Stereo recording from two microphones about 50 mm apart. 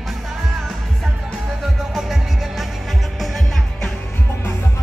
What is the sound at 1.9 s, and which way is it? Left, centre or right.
Music, centre.